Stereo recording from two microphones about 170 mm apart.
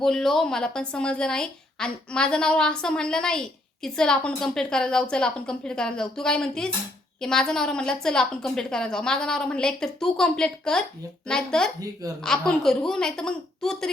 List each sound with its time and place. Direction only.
0.0 s a woman's voice: centre (ahead or behind)